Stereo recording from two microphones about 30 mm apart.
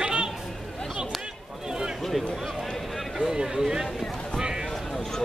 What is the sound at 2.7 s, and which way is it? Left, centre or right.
Run, centre.